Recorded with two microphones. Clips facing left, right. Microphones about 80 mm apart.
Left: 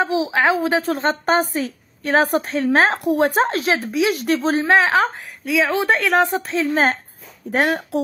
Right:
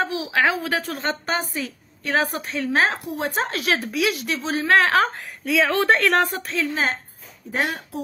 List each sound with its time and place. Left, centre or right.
0.0 s a woman's voice: left
3.0 s speech: left
3.4 s speech: left
4.1 s a woman's voice: left
4.6 s speech: centre
5.4 s a woman's voice: centre
6.2 s speech: left
6.7 s a woman's voice: left